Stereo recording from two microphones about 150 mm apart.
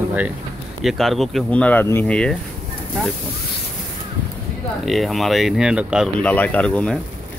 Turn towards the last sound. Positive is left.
turn(degrees=5)  # may be behind; listen again after turning